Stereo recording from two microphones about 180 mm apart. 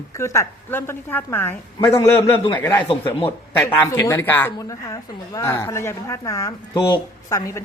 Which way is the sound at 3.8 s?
15° left (ahead or behind).